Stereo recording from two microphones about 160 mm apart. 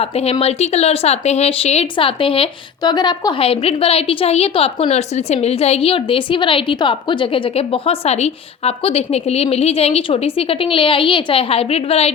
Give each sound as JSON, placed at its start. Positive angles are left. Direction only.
{"t": 0.0, "sound": "speech", "side_deg": 40}